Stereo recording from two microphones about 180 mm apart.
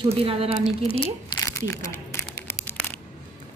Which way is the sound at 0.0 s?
30° right (ahead or behind).